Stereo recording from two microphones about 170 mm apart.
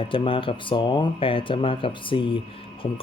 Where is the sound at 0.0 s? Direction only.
30° left (ahead or behind).